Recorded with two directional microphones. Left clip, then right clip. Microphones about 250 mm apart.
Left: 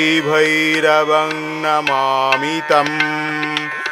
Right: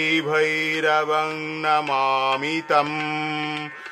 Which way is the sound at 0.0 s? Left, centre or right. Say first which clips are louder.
Left 6 dB; left.